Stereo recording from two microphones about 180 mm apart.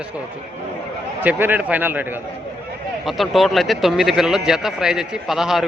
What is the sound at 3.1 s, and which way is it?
Speech, centre (ahead or behind).